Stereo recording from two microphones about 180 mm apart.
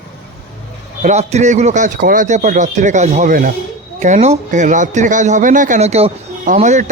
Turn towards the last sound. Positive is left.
turn(degrees=-40)  # may be behind; listen again after turning